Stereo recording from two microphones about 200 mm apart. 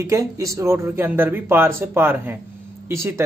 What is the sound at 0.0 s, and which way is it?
Speech, 15° right (ahead or behind).